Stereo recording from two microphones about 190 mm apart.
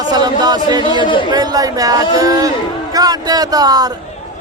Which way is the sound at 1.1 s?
25° left (ahead or behind).